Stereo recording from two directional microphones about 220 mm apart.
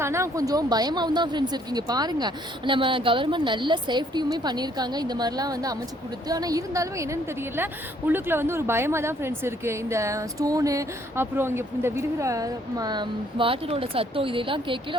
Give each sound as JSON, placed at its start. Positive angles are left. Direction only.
{"t": 0.0, "sound": "a woman's voice", "side_deg": -10}